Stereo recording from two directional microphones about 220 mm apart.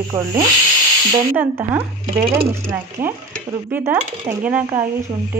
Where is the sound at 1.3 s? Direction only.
10° right (ahead or behind).